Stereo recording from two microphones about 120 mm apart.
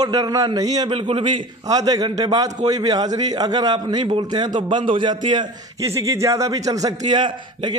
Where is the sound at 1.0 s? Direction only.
45° right (ahead or behind).